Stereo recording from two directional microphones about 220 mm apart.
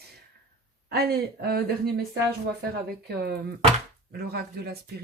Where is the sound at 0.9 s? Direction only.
45° right (ahead or behind).